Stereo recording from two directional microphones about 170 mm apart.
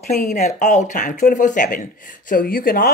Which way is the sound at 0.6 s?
45° left (ahead or behind).